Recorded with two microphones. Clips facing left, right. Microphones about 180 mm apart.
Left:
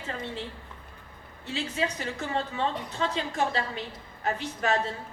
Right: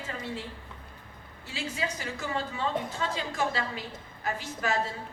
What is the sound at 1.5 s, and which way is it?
A woman's voice, 35° left (ahead or behind).